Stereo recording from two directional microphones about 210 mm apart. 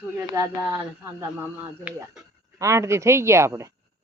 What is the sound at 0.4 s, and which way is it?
Speech, 15° right (ahead or behind).